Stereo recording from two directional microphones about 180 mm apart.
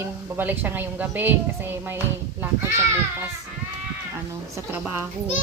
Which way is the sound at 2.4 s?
15° right (ahead or behind).